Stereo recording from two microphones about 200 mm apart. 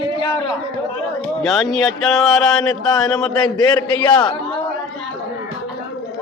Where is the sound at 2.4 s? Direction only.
20° left (ahead or behind).